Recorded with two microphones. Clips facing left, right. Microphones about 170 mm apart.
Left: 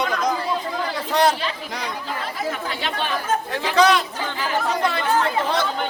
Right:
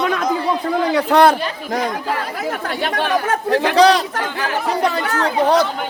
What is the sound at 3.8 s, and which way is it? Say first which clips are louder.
Speech: right 4 dB; 35° right (ahead or behind).